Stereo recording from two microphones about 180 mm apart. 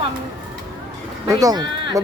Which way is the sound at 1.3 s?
20° right (ahead or behind).